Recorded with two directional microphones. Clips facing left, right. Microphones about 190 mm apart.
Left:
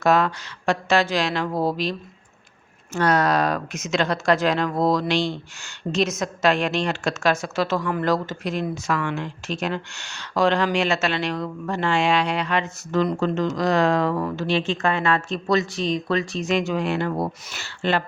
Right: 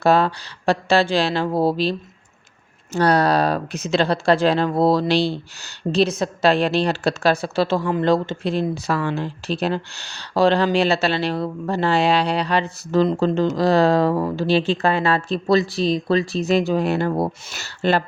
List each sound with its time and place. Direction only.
0.0 s speech: 30° right (ahead or behind)